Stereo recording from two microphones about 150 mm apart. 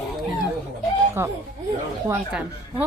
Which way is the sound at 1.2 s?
15° right (ahead or behind).